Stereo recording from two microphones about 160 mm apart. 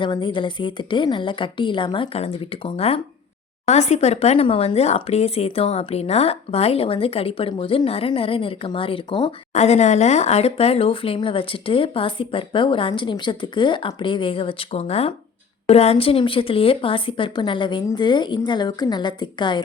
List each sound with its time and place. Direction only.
0.0 s a woman's voice: 30° left (ahead or behind)